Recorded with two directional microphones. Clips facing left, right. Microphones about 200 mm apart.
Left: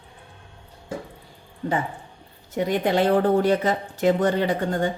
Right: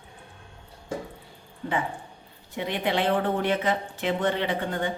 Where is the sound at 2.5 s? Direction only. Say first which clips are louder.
Left 6 dB; 45° left (ahead or behind).